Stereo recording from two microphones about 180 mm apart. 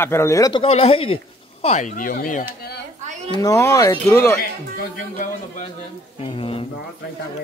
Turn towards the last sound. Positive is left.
turn(degrees=30)  # may be behind; listen again after turning